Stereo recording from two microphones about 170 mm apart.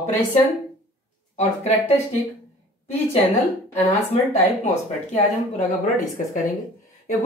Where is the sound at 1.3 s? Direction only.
40° left (ahead or behind).